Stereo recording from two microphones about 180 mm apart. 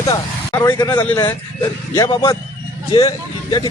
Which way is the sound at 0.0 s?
20° left (ahead or behind).